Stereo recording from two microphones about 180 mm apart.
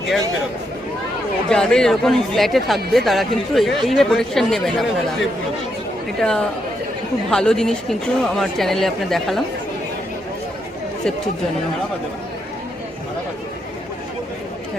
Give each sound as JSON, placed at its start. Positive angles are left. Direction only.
{"t": 1.5, "sound": "speech", "side_deg": 5}
{"t": 6.1, "sound": "speech", "side_deg": 5}